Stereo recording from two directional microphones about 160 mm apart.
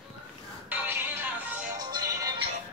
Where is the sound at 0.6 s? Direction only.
10° right (ahead or behind).